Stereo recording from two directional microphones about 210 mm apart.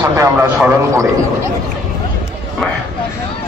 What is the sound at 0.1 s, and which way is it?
Speech, 10° right (ahead or behind).